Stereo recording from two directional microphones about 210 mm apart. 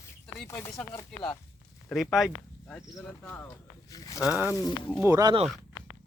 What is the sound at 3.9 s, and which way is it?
Speech, 15° left (ahead or behind).